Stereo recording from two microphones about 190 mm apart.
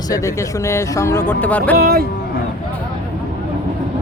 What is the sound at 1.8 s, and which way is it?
Speech, 50° right (ahead or behind).